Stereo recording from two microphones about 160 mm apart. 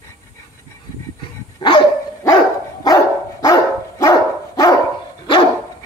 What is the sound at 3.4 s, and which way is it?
Dog, 20° left (ahead or behind).